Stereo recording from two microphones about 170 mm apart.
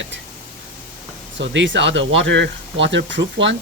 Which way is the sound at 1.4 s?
90° right.